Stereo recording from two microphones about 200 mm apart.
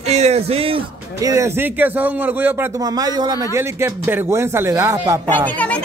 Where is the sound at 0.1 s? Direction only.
30° right (ahead or behind).